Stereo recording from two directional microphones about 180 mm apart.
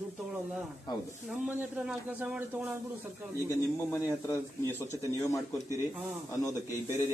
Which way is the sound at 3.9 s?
15° left (ahead or behind).